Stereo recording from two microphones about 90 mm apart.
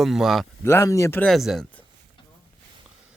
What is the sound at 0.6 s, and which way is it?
Speech, 35° left (ahead or behind).